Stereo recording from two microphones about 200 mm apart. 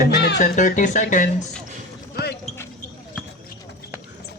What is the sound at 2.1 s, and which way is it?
Basketball bounce, 55° left (ahead or behind).